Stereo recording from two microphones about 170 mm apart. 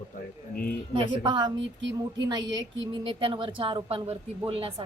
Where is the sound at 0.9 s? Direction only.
25° right (ahead or behind).